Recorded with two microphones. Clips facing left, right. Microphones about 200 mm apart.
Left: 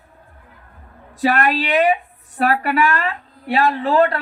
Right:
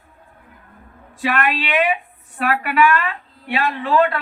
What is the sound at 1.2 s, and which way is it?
Speech, 40° left (ahead or behind).